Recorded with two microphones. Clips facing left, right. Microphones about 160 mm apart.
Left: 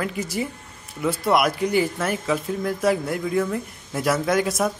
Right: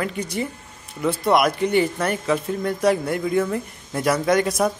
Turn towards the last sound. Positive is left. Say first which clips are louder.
# right 2 dB
turn(degrees=0)  # may be behind; listen again after turning